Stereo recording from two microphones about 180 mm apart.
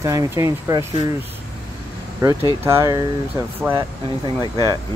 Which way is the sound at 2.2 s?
15° right (ahead or behind).